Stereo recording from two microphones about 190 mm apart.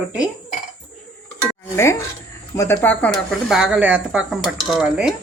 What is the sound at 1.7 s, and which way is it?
Speech, 15° left (ahead or behind).